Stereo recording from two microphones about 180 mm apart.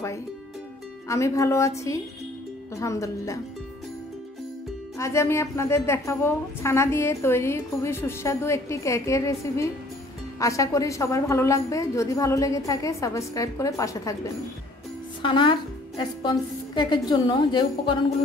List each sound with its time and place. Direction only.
1.0 s a woman's voice: 15° left (ahead or behind)
4.9 s a woman's voice: 15° left (ahead or behind)